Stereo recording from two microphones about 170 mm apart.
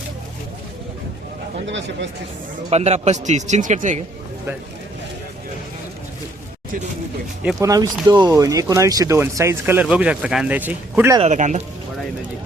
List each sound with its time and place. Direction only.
1.6 s speech: 90° right
2.6 s speech: 40° right (ahead or behind)
7.6 s speech: 20° right (ahead or behind)
11.2 s speech: 45° right (ahead or behind)